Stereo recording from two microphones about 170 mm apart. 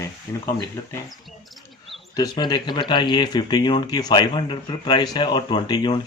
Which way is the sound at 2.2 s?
25° left (ahead or behind).